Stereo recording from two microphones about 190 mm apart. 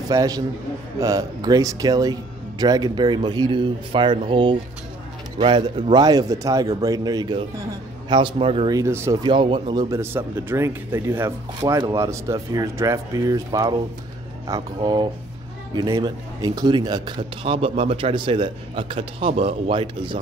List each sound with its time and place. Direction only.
0.1 s a man's voice: 20° right (ahead or behind)
8.7 s a man's voice: 15° right (ahead or behind)